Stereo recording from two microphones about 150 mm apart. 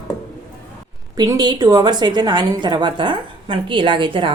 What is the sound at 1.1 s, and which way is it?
A woman's voice, 25° right (ahead or behind).